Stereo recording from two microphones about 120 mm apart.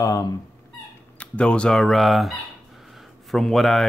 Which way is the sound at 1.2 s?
10° left (ahead or behind).